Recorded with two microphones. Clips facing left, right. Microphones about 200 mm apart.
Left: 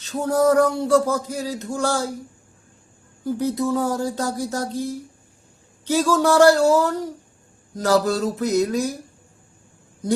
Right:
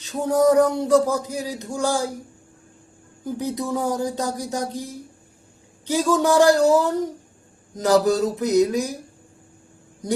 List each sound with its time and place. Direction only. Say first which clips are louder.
0.0 s speech: right 1 dB; 15° right (ahead or behind)
3.2 s speech: left 4 dB; 15° right (ahead or behind)